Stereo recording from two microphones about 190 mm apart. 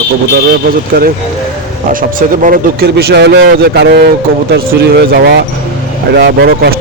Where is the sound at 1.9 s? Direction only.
45° right (ahead or behind).